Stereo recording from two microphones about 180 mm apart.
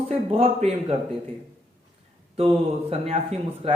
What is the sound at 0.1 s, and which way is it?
Speech, 30° right (ahead or behind).